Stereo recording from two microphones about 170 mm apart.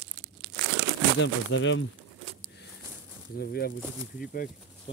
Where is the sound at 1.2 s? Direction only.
90° left.